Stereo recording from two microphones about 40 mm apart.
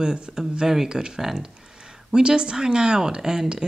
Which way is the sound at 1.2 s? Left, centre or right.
Centre.